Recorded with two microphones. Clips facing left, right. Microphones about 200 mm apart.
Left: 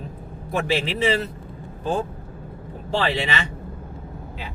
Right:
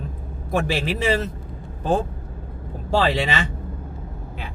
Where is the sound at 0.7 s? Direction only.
45° right (ahead or behind).